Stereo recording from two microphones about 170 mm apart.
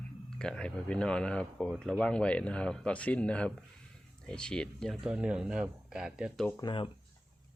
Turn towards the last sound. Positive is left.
turn(degrees=30)  # may be behind; listen again after turning